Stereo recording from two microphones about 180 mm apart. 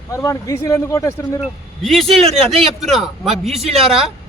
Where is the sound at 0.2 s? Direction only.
20° left (ahead or behind).